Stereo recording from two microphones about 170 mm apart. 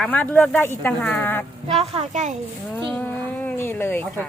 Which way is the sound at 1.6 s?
35° right (ahead or behind).